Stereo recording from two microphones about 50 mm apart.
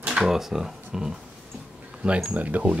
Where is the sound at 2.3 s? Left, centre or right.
Right.